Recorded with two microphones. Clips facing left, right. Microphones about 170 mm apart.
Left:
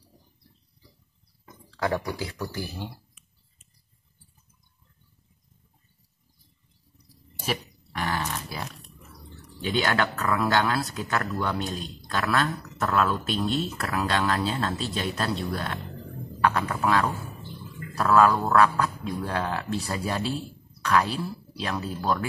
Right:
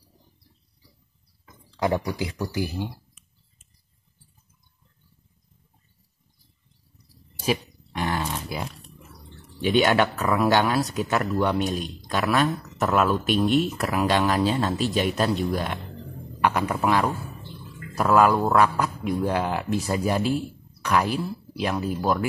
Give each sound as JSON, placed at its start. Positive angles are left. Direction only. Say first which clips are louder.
{"t": 1.8, "sound": "speech", "louder": "right 3 dB", "side_deg": -15}
{"t": 8.0, "sound": "dog", "louder": "right 2 dB", "side_deg": -15}
{"t": 9.8, "sound": "speech", "louder": "right 5 dB", "side_deg": -20}